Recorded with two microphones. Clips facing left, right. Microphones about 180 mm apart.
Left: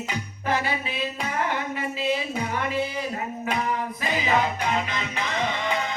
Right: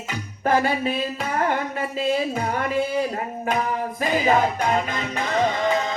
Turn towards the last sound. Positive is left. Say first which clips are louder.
# right 5 dB
turn(degrees=-40)  # may be behind; listen again after turning